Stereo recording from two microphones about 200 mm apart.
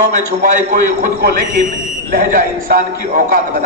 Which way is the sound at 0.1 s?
40° right (ahead or behind).